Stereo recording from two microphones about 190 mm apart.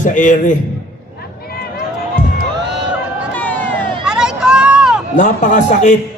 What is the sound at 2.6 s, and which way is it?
Crowd, 65° right (ahead or behind).